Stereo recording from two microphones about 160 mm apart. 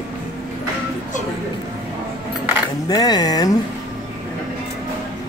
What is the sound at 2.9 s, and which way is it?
Speech, 25° left (ahead or behind).